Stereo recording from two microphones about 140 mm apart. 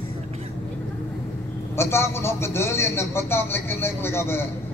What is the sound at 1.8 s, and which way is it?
A man's voice, 20° left (ahead or behind).